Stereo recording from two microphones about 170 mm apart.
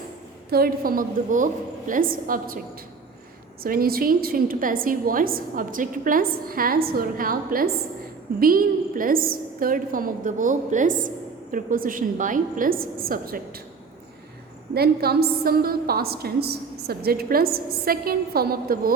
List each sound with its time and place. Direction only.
0.5 s a woman's voice: 60° right (ahead or behind)
14.7 s a woman's voice: 65° right (ahead or behind)